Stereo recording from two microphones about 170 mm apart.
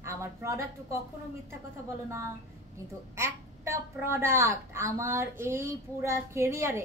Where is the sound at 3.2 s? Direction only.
15° right (ahead or behind).